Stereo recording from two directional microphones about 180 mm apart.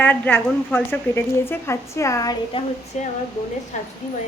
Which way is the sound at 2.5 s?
30° left (ahead or behind).